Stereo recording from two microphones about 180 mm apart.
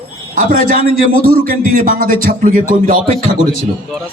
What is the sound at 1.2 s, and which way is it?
A man's voice, 55° right (ahead or behind).